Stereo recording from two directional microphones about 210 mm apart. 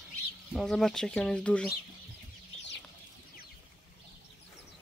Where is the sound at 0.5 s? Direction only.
5° left (ahead or behind).